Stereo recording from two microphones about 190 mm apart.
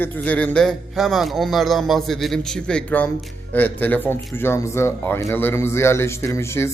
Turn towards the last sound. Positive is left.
turn(degrees=15)  # may be behind; listen again after turning